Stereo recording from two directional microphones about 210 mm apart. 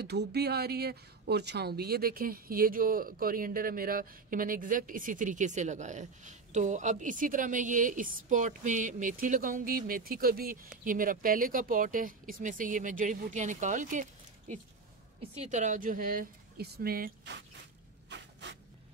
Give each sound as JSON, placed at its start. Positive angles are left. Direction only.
{"t": 0.0, "sound": "speech", "side_deg": -50}
{"t": 15.4, "sound": "speech", "side_deg": -35}
{"t": 18.1, "sound": "a sound", "side_deg": -55}